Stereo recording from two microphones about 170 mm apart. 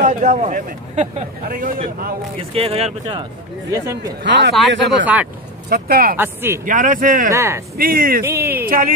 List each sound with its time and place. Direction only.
0.0 s speech: 45° right (ahead or behind)
2.5 s speech: 35° right (ahead or behind)
3.7 s speech: 15° right (ahead or behind)
4.2 s speech: 90° right
5.0 s speech: 10° right (ahead or behind)
5.7 s speech: 60° right (ahead or behind)
6.1 s speech: 15° right (ahead or behind)
6.6 s speech: 50° right (ahead or behind)
7.3 s speech: 15° right (ahead or behind)
7.7 s speech: 60° right (ahead or behind)
8.2 s speech: 15° right (ahead or behind)
8.6 s speech: 55° right (ahead or behind)